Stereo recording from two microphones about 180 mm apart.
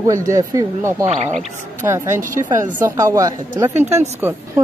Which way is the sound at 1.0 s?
40° right (ahead or behind).